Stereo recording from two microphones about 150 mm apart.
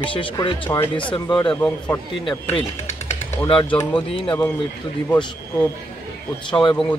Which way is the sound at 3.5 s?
35° left (ahead or behind).